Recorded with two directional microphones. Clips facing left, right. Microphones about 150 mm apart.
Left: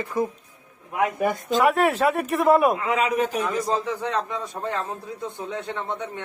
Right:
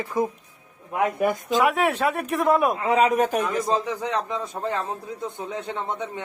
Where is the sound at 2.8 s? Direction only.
35° right (ahead or behind).